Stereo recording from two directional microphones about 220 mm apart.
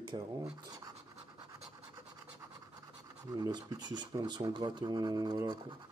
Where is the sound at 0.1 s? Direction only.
20° right (ahead or behind).